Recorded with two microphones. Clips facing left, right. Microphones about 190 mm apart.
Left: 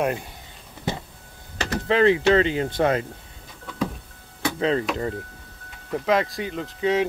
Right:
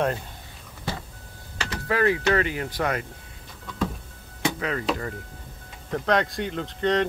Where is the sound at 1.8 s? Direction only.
25° left (ahead or behind).